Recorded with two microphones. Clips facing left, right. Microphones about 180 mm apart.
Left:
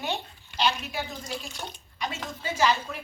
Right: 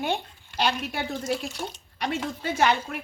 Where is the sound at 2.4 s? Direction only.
60° right (ahead or behind).